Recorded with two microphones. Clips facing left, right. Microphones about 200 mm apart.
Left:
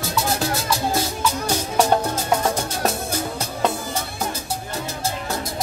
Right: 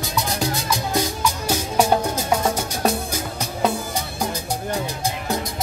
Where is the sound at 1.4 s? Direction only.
10° right (ahead or behind).